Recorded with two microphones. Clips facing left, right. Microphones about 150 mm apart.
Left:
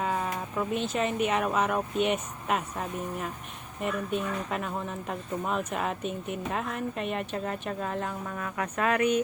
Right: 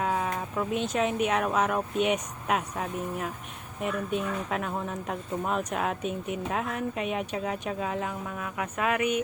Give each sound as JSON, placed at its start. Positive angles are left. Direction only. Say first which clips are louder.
{"t": 0.0, "sound": "a woman's voice", "louder": "right 1 dB", "side_deg": 0}